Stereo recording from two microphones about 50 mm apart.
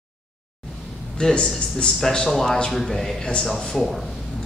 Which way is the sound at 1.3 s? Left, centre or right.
Centre.